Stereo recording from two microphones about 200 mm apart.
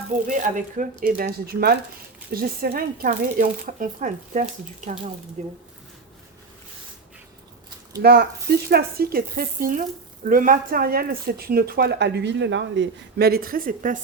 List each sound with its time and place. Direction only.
0.3 s speech: 40° right (ahead or behind)
7.9 s speech: 55° right (ahead or behind)